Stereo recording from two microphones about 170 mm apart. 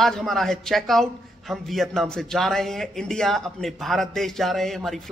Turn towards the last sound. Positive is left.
turn(degrees=0)  # may be behind; listen again after turning